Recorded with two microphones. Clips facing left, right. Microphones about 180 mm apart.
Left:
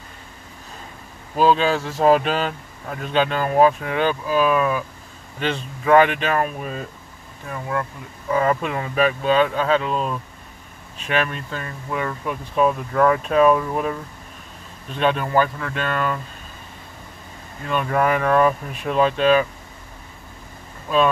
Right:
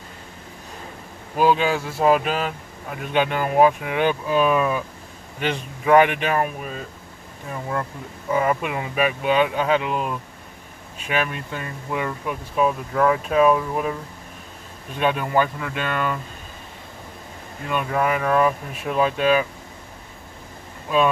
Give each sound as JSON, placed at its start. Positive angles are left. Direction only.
{"t": 1.3, "sound": "speech", "side_deg": -15}
{"t": 8.3, "sound": "speech", "side_deg": -15}
{"t": 15.0, "sound": "speech", "side_deg": -10}
{"t": 17.6, "sound": "speech", "side_deg": -10}